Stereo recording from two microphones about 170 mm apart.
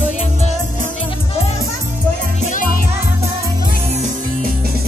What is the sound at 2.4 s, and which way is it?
Music, 50° left (ahead or behind).